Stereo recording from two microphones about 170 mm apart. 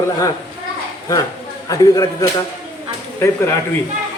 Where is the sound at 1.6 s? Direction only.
20° left (ahead or behind).